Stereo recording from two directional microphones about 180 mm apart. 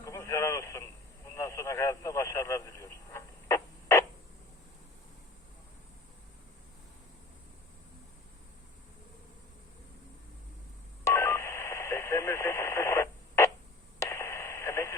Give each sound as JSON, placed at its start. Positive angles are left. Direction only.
{"t": 0.0, "sound": "radio", "side_deg": 15}
{"t": 11.1, "sound": "telephone dialing", "side_deg": 15}
{"t": 14.0, "sound": "radio", "side_deg": 15}